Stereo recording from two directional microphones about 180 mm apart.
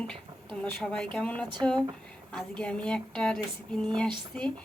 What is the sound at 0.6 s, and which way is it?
Speech, 5° left (ahead or behind).